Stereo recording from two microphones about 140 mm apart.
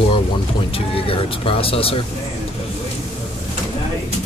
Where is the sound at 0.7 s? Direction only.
40° left (ahead or behind).